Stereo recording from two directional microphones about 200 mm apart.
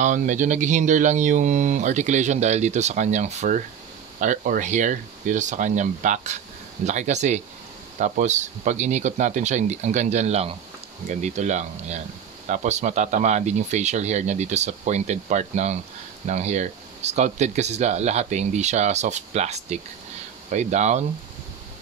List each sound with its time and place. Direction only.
0.0 s speech: 40° right (ahead or behind)